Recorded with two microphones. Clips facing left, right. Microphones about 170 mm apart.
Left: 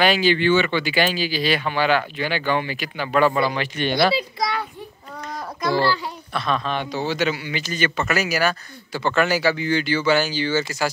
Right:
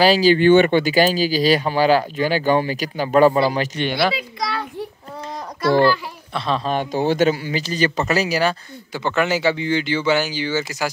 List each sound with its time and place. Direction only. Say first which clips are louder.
0.0 s speech: right 5 dB; 35° right (ahead or behind)
4.4 s a sound: left 1 dB; 20° left (ahead or behind)
5.8 s a child's voice: right 5 dB; 20° right (ahead or behind)
6.7 s speech: right 5 dB; 45° right (ahead or behind); by 10.9 s 15° right (ahead or behind)